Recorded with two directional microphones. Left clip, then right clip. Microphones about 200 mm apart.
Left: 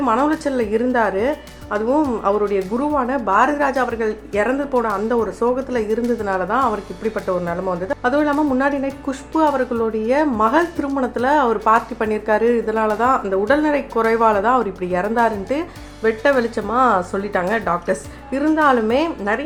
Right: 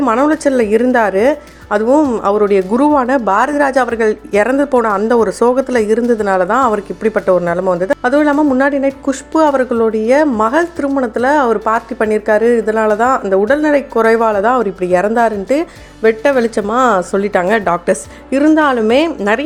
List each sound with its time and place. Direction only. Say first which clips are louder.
0.0 s speech: right 6 dB; 25° right (ahead or behind); by 19.4 s 40° right (ahead or behind)